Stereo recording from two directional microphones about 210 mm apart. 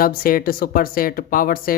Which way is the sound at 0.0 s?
45° left (ahead or behind).